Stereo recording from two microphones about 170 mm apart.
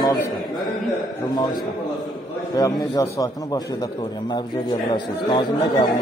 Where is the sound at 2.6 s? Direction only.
20° left (ahead or behind).